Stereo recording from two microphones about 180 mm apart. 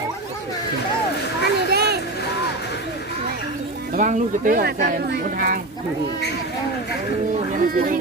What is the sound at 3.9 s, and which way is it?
Speech, 45° right (ahead or behind).